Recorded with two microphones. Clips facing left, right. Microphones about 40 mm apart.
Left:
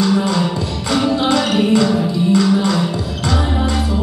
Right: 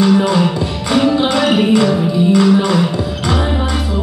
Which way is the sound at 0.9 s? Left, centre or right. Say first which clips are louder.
Right 2 dB; centre.